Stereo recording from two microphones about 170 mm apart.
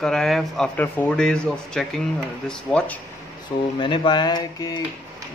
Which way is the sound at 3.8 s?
30° left (ahead or behind).